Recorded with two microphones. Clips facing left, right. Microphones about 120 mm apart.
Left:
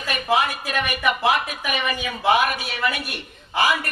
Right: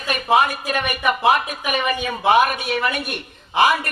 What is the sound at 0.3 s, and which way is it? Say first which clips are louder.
A man's voice: right 5 dB; 50° right (ahead or behind).